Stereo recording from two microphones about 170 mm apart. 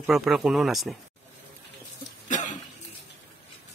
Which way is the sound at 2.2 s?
45° left (ahead or behind).